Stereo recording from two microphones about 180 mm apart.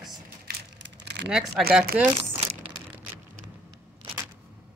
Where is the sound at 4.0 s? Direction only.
15° right (ahead or behind).